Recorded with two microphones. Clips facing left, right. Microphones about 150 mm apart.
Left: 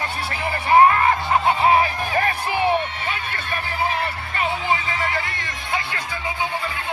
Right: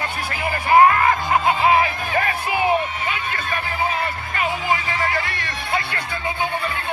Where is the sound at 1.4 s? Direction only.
35° left (ahead or behind).